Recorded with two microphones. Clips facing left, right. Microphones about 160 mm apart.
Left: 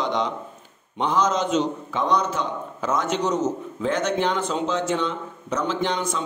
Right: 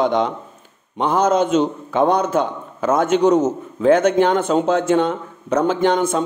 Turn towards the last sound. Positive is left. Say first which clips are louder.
# right 8 dB
turn(degrees=-50)  # may be behind; listen again after turning